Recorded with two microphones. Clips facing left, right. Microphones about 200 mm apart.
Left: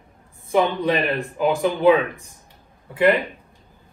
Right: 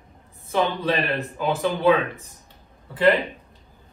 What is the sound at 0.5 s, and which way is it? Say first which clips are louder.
A man's voice: left 3 dB; 15° left (ahead or behind).